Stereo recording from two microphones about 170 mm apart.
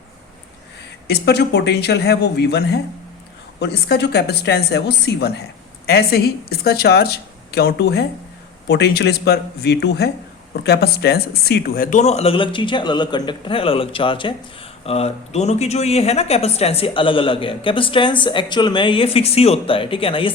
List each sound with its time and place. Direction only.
1.0 s a woman's voice: 75° left (ahead or behind); by 20.3 s 30° left (ahead or behind)